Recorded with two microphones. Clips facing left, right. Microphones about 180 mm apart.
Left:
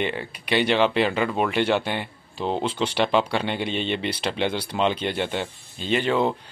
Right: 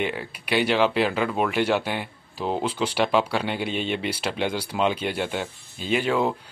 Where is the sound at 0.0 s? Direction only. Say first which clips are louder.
Left 1 dB; 5° right (ahead or behind).